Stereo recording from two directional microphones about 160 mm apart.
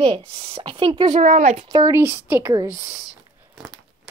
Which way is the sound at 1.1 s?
45° right (ahead or behind).